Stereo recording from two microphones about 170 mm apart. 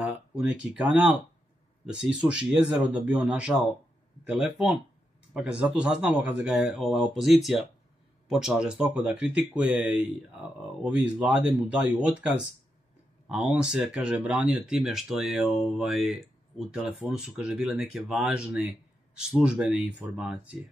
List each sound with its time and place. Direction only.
0.0 s speech: 5° right (ahead or behind)
11.1 s speech: 5° right (ahead or behind)